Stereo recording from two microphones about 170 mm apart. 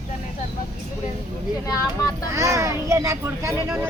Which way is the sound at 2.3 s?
20° right (ahead or behind).